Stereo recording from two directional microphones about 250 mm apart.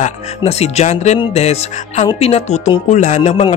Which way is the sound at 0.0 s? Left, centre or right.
Left.